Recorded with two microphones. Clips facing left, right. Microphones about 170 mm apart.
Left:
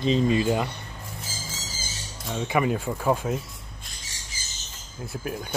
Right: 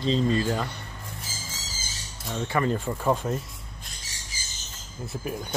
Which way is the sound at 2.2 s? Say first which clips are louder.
Left 2 dB; 10° left (ahead or behind).